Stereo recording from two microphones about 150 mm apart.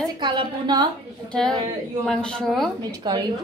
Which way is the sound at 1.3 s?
5° left (ahead or behind).